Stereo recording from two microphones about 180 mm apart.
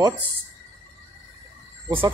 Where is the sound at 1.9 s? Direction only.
10° right (ahead or behind).